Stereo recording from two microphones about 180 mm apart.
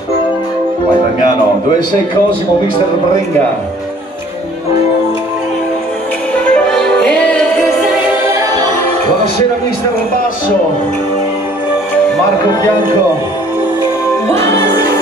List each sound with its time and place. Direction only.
6.5 s music: 5° left (ahead or behind)
14.3 s music: 15° left (ahead or behind)
14.7 s music: 60° right (ahead or behind)